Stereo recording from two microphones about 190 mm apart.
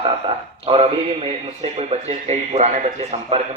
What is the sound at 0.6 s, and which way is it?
A man's voice, 30° right (ahead or behind).